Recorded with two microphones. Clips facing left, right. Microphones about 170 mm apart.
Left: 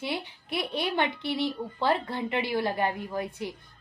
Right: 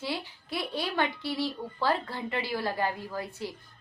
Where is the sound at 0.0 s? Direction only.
20° left (ahead or behind).